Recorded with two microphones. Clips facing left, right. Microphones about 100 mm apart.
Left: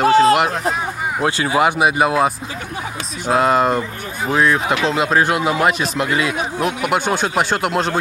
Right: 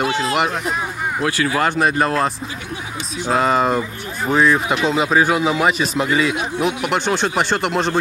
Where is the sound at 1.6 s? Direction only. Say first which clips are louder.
Left 3 dB; 10° left (ahead or behind).